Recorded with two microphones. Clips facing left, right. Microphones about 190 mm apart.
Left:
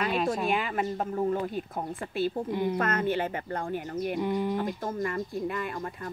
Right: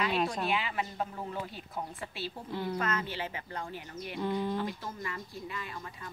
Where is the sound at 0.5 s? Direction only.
45° left (ahead or behind).